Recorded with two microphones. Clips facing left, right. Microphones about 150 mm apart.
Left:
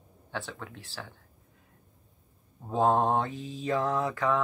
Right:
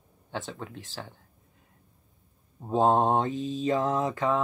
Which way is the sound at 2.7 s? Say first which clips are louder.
Right 2 dB; 20° right (ahead or behind).